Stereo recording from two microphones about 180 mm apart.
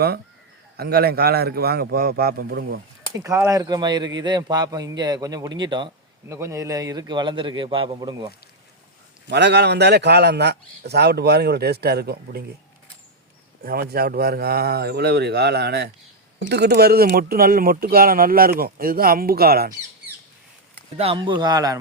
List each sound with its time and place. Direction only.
0.8 s speech: 60° right (ahead or behind)
3.2 s a man's voice: 15° right (ahead or behind)
9.2 s speech: 70° right (ahead or behind)
13.7 s speech: 55° right (ahead or behind)
20.9 s a man's voice: 30° right (ahead or behind)